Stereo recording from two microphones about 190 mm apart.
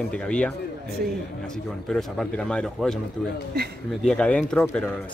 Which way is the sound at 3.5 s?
55° right (ahead or behind).